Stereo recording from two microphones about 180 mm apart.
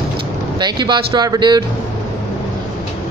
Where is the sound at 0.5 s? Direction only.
25° right (ahead or behind).